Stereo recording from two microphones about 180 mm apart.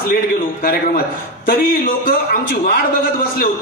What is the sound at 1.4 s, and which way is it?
A man's voice, 55° left (ahead or behind).